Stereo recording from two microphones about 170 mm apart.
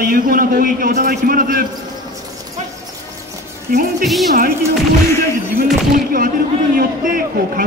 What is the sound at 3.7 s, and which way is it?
Speech, 55° right (ahead or behind).